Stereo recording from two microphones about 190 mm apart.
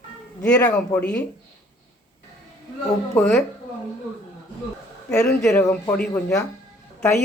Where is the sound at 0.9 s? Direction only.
5° left (ahead or behind).